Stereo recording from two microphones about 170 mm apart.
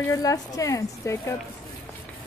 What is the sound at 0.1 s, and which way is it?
A woman's voice, 20° left (ahead or behind).